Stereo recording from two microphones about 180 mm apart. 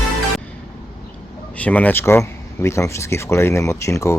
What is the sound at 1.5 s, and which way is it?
Speech, 10° left (ahead or behind).